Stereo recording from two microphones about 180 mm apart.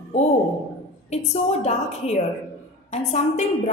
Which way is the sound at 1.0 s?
40° left (ahead or behind).